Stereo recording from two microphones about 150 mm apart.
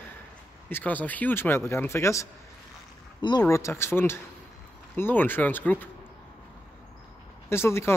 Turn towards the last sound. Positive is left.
turn(degrees=15)  # may be behind; listen again after turning